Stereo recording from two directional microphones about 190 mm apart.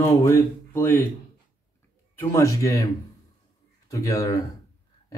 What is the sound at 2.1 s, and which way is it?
Speech, 15° left (ahead or behind).